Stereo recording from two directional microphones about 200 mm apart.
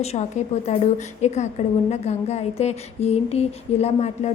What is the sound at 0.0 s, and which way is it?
A woman's voice, 35° left (ahead or behind).